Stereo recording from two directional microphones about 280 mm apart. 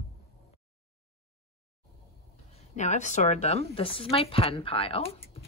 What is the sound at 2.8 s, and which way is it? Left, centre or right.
A woman's voice, left.